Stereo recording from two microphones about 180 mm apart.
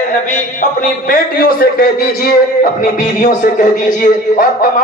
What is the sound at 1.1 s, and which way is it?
A man's voice, 55° left (ahead or behind).